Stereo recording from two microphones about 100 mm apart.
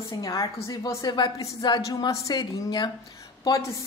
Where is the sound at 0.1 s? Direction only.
40° left (ahead or behind).